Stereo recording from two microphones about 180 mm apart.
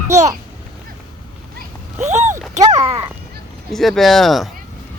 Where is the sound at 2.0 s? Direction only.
40° right (ahead or behind).